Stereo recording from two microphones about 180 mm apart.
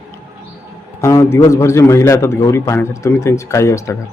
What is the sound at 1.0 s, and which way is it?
A man's voice, 15° left (ahead or behind).